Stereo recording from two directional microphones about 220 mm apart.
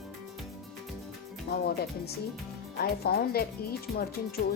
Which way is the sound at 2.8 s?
45° left (ahead or behind).